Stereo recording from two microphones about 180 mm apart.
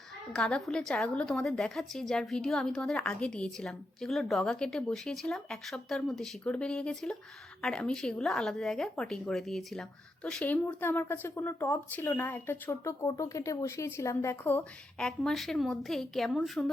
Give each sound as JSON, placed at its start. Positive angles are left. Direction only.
{"t": 0.3, "sound": "a woman's voice", "side_deg": 5}